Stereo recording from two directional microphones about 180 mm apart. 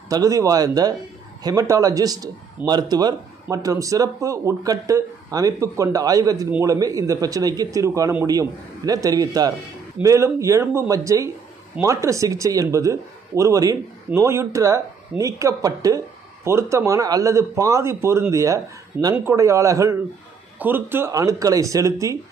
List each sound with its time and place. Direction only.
0.1 s a man's voice: 20° right (ahead or behind)